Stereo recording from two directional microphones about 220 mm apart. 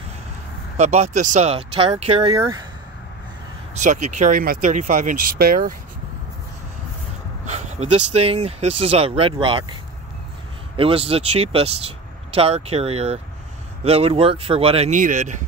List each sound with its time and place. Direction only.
0.7 s speech: 30° right (ahead or behind)
3.7 s speech: 35° right (ahead or behind)
7.4 s a sound: 30° right (ahead or behind)
8.1 s speech: 30° right (ahead or behind)
10.8 s speech: 25° right (ahead or behind)